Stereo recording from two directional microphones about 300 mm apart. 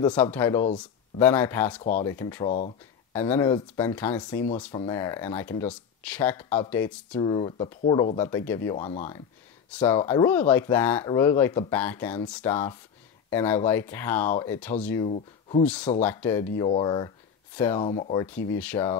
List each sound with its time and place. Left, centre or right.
0.1 s speech: centre
1.8 s speech: left
2.0 s speech: centre
8.7 s speech: left
9.7 s speech: centre
15.0 s speech: left
15.6 s speech: centre